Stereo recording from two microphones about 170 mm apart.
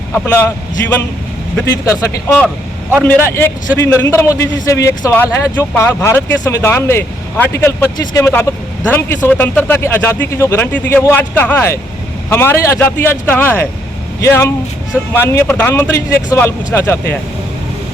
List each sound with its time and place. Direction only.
0.1 s a man's voice: 10° left (ahead or behind)